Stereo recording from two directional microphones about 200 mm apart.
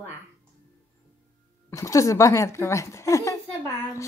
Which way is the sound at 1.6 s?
15° left (ahead or behind).